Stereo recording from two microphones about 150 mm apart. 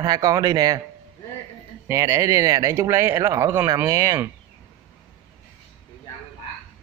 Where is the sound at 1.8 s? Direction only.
20° right (ahead or behind).